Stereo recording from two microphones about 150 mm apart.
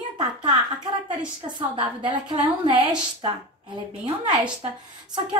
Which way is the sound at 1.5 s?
35° right (ahead or behind).